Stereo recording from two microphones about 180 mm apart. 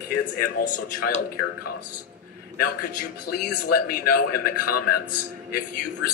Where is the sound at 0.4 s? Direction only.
55° left (ahead or behind).